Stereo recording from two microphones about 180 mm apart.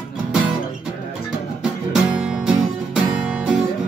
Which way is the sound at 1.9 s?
5° right (ahead or behind).